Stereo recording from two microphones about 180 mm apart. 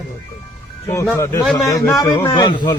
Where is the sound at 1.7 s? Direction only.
20° left (ahead or behind).